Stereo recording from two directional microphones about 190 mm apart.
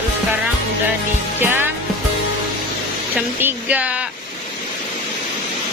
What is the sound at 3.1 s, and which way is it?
Speech, 10° right (ahead or behind).